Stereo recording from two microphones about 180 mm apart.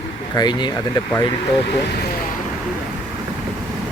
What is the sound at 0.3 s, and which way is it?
Speech, 25° left (ahead or behind).